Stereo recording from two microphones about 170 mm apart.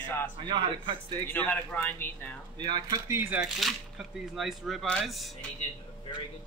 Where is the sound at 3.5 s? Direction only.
Centre (ahead or behind).